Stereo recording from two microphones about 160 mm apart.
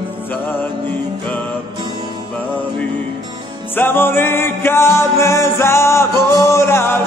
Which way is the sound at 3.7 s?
15° left (ahead or behind).